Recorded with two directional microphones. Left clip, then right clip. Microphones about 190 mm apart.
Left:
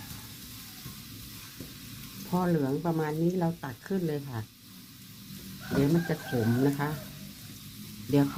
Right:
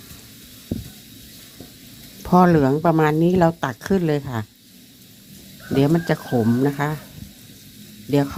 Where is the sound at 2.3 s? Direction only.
50° right (ahead or behind).